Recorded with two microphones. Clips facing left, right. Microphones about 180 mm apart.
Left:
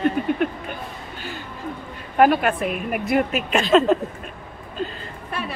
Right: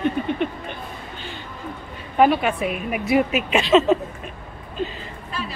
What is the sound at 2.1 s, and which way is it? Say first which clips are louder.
A woman's voice: left 1 dB; centre (ahead or behind).